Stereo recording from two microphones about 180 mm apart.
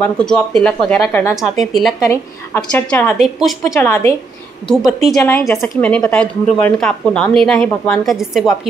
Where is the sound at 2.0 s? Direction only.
15° left (ahead or behind).